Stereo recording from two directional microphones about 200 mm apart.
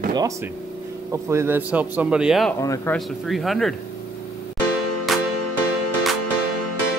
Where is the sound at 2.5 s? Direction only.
15° left (ahead or behind).